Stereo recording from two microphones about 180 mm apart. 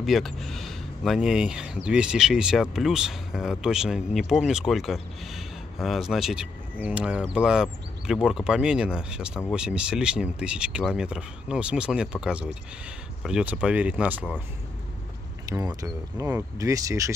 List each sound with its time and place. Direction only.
0.0 s speech: centre (ahead or behind)
15.5 s speech: 20° right (ahead or behind)